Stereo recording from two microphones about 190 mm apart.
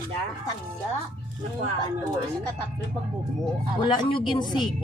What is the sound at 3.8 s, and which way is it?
Speech, 25° left (ahead or behind).